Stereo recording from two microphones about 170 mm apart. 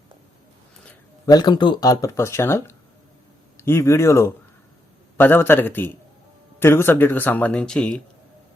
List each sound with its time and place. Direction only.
1.3 s speech: 25° left (ahead or behind); by 8.0 s 5° left (ahead or behind)